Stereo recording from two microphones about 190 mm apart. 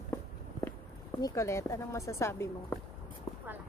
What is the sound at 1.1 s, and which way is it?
A woman's voice, 20° left (ahead or behind).